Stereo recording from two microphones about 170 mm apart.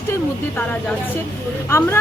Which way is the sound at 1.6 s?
15° left (ahead or behind).